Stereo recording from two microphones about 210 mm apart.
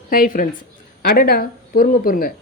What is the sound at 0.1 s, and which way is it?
Speech, 40° left (ahead or behind).